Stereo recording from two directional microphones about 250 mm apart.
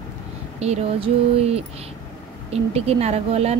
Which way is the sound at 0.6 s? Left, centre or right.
Right.